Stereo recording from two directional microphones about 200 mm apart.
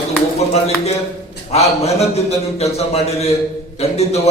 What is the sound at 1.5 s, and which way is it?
A man's voice, 30° left (ahead or behind).